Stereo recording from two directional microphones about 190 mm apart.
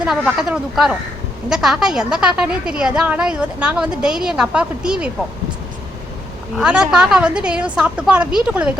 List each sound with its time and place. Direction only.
0.3 s a woman's voice: 5° right (ahead or behind)
6.6 s a woman's voice: 5° right (ahead or behind)